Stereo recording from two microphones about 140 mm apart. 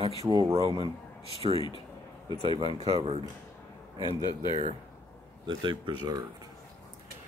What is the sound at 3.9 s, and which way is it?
Speech, 35° left (ahead or behind).